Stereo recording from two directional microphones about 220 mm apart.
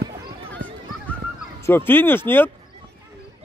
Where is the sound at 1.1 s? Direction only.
5° left (ahead or behind).